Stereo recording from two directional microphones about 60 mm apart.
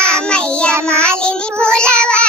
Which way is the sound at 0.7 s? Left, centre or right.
Right.